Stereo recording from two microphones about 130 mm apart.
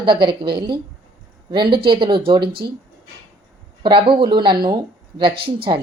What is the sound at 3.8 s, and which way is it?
Speech, 40° right (ahead or behind).